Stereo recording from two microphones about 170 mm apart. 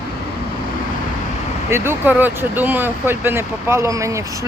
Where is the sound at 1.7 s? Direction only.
10° right (ahead or behind).